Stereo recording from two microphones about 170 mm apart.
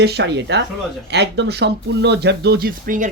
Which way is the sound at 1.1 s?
80° right.